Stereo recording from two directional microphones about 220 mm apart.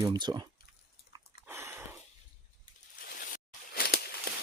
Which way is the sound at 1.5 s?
10° right (ahead or behind).